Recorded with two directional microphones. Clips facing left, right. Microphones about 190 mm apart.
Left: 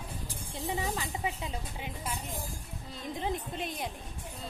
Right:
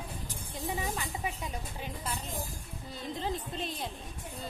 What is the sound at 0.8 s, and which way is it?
Speech, 25° left (ahead or behind).